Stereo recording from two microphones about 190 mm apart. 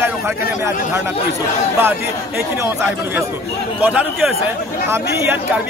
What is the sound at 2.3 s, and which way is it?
Speech, 10° right (ahead or behind).